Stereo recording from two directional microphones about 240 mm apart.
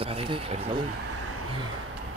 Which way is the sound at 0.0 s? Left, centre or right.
Right.